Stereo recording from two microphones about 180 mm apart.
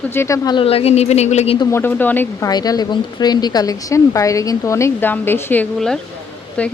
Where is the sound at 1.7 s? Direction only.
10° left (ahead or behind).